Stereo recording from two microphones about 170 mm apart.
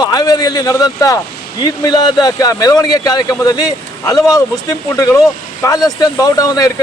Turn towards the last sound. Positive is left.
turn(degrees=20)  # may be behind; listen again after turning